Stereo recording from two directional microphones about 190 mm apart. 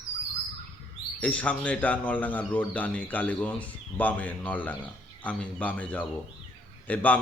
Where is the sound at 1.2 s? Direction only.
5° left (ahead or behind).